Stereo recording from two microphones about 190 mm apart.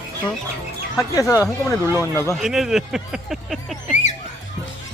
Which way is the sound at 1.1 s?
15° left (ahead or behind).